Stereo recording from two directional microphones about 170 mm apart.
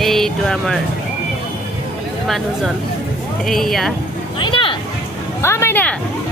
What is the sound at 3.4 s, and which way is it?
Speech, centre (ahead or behind).